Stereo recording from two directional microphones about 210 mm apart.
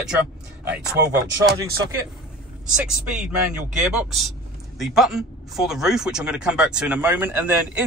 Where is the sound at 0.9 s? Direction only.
50° right (ahead or behind).